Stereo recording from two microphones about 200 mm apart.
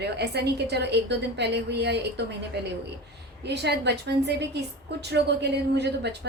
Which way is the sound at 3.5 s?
55° right (ahead or behind).